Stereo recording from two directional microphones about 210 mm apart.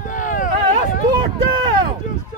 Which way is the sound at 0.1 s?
40° left (ahead or behind).